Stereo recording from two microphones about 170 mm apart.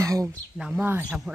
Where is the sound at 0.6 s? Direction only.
5° right (ahead or behind).